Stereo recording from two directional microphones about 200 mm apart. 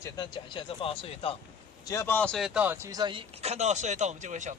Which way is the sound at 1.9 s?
10° left (ahead or behind).